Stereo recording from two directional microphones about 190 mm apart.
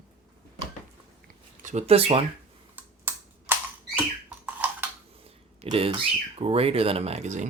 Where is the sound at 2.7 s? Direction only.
10° right (ahead or behind).